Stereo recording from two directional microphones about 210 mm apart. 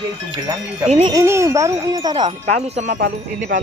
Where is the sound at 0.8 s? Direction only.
30° right (ahead or behind).